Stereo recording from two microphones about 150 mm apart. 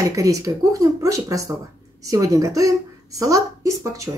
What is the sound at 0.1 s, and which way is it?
Speech, 20° right (ahead or behind).